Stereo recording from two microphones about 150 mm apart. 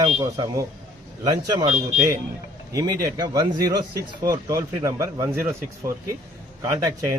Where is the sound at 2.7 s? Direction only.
20° right (ahead or behind).